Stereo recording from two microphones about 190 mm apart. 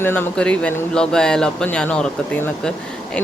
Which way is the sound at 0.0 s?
10° left (ahead or behind).